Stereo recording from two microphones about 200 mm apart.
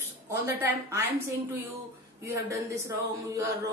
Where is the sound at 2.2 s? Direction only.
15° right (ahead or behind).